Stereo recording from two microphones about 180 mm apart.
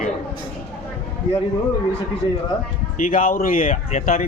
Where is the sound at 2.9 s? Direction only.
50° left (ahead or behind).